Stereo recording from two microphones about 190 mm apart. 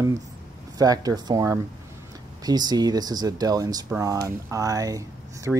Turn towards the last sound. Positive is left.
turn(degrees=-15)  # may be behind; listen again after turning